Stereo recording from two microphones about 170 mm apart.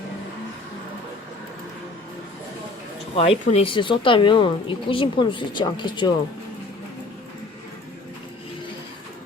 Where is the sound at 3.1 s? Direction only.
35° left (ahead or behind).